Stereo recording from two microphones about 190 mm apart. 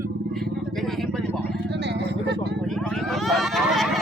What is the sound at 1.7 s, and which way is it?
Vehicle, 65° right (ahead or behind).